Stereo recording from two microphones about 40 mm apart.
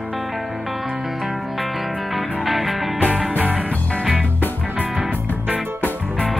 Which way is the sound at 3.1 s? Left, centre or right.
Right.